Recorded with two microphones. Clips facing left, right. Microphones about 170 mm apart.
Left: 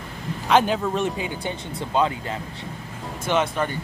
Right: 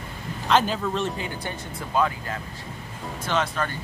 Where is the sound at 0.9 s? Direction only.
15° left (ahead or behind).